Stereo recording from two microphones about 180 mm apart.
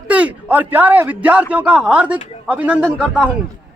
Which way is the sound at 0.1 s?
10° right (ahead or behind).